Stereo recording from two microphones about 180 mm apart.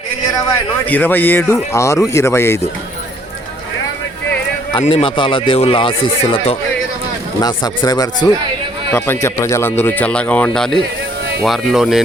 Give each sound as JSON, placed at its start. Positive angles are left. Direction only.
{"t": 0.9, "sound": "speech", "side_deg": 10}
{"t": 4.8, "sound": "speech", "side_deg": 30}
{"t": 7.4, "sound": "speech", "side_deg": 20}